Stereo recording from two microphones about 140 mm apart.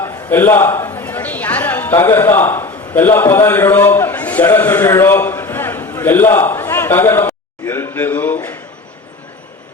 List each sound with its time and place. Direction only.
0.0 s a man's voice: 15° left (ahead or behind)